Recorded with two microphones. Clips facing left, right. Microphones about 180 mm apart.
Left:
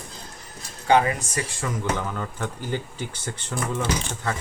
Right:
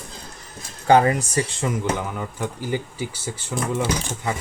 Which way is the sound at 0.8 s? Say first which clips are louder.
Right 4 dB; 40° right (ahead or behind).